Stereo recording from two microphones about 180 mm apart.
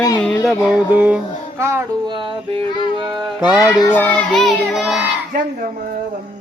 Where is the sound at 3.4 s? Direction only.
20° left (ahead or behind).